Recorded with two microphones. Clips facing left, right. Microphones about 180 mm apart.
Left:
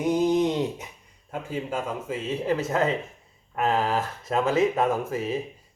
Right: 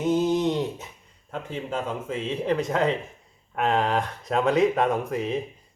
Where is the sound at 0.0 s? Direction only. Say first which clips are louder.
Even; 15° left (ahead or behind).